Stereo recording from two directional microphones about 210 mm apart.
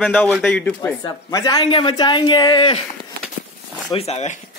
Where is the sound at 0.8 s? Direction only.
15° left (ahead or behind).